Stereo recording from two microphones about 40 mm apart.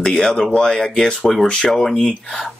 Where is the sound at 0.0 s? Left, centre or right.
Centre.